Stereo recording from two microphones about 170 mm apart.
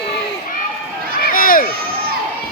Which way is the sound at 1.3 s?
55° left (ahead or behind).